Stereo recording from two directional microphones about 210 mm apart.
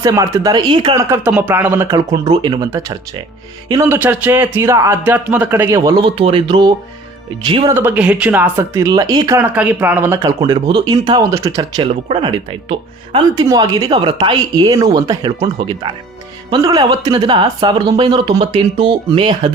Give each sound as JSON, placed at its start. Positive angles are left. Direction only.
{"t": 0.0, "sound": "speech", "side_deg": -15}
{"t": 7.7, "sound": "a woman's voice", "side_deg": -10}